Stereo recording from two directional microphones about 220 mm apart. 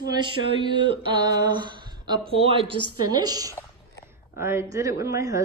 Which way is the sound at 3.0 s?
20° right (ahead or behind).